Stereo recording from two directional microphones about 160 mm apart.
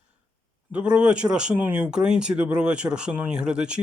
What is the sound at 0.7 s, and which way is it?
Speech, 5° right (ahead or behind).